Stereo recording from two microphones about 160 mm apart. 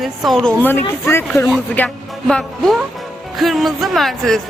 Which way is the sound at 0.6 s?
15° left (ahead or behind).